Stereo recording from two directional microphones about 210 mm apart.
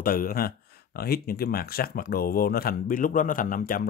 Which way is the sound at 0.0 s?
45° left (ahead or behind).